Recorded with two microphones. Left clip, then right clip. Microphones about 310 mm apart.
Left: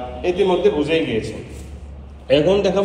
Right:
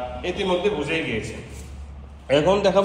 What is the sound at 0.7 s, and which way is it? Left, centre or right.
Speech, right.